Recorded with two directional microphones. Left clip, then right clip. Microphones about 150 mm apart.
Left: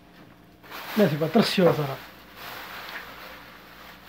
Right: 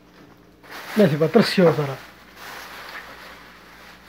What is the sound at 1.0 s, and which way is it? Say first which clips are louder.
Speech: right 5 dB; 65° right (ahead or behind).